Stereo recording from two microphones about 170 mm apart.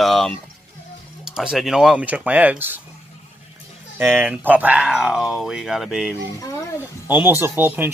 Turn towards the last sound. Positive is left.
turn(degrees=-10)  # may be behind; listen again after turning